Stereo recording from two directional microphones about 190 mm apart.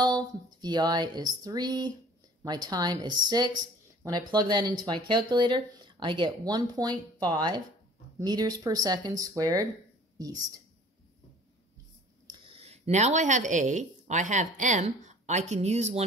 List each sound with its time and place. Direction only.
0.0 s speech: 20° right (ahead or behind)
12.3 s a woman's voice: 30° right (ahead or behind)